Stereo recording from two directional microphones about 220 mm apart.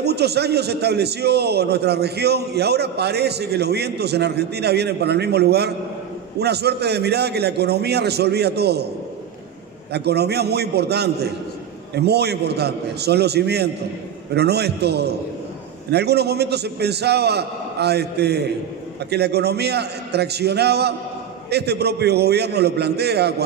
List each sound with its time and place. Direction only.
0.0 s a man's voice: 50° right (ahead or behind)
9.9 s a man's voice: 50° right (ahead or behind)